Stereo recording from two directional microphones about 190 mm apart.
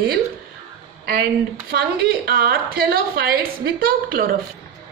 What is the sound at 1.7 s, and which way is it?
A woman's voice, 55° right (ahead or behind).